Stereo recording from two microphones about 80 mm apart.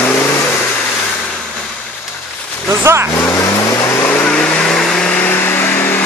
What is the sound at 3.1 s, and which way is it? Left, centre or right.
Vehicle, left.